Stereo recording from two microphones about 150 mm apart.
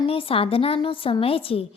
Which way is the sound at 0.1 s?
40° left (ahead or behind).